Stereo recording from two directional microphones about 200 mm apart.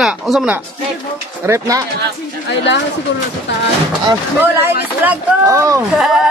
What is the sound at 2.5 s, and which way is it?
Speech, 60° left (ahead or behind).